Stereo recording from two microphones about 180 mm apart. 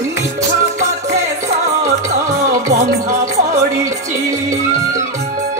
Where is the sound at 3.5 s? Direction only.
15° right (ahead or behind).